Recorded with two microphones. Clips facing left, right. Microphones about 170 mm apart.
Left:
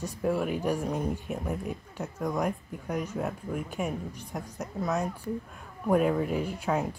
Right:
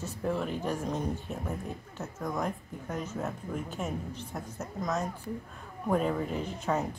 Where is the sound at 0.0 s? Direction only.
10° left (ahead or behind).